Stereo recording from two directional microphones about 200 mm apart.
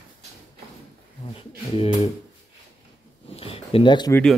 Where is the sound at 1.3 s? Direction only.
30° left (ahead or behind).